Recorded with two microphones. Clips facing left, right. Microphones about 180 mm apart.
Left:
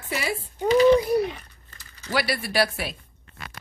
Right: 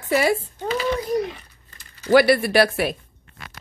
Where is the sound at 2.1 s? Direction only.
55° right (ahead or behind).